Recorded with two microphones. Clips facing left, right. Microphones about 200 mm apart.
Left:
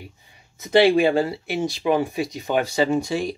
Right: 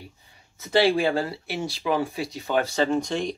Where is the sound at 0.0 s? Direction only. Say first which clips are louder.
Left 3 dB; 15° left (ahead or behind).